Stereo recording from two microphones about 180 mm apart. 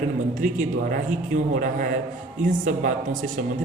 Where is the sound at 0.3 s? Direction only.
45° right (ahead or behind).